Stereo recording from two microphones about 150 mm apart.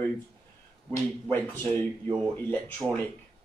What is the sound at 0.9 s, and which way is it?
Speech, 15° left (ahead or behind).